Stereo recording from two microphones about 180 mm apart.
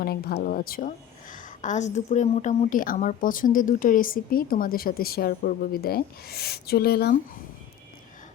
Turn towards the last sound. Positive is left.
turn(degrees=60)  # may be behind; listen again after turning